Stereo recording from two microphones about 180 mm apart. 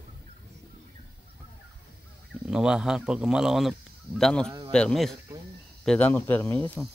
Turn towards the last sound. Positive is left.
turn(degrees=10)  # may be behind; listen again after turning